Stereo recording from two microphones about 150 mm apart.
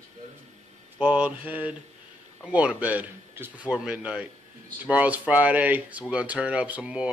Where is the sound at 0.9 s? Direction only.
10° right (ahead or behind).